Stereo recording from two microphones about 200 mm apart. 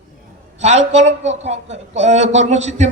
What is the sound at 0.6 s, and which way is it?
A man's voice, 35° right (ahead or behind).